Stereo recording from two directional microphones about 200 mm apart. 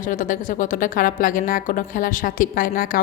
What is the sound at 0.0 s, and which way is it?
Speech, 40° left (ahead or behind).